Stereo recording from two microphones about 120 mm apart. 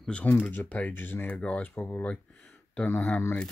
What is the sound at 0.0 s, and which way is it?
Speech, 10° left (ahead or behind).